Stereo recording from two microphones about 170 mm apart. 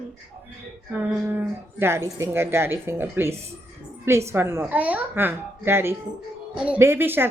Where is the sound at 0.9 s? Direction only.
10° right (ahead or behind).